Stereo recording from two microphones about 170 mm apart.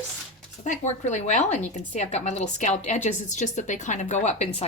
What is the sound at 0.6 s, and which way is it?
A woman's voice, 45° left (ahead or behind).